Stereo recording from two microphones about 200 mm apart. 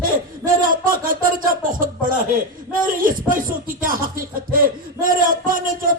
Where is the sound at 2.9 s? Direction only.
45° right (ahead or behind).